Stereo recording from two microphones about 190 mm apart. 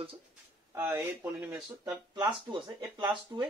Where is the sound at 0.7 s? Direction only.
15° right (ahead or behind).